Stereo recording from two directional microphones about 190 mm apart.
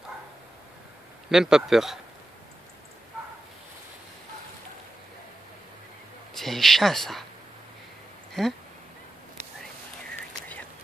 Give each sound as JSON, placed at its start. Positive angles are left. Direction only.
{"t": 1.3, "sound": "speech", "side_deg": -5}
{"t": 6.3, "sound": "speech", "side_deg": 0}
{"t": 8.3, "sound": "speech", "side_deg": 0}